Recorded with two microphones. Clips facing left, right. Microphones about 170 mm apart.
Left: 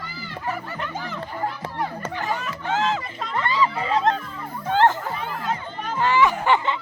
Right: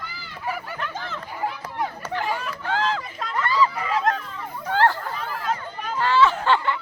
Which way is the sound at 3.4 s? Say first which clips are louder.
Right 1 dB; 20° left (ahead or behind).